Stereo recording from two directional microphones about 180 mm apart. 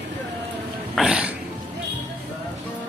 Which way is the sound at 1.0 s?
5° right (ahead or behind).